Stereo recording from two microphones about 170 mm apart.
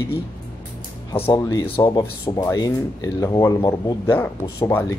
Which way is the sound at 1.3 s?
20° left (ahead or behind).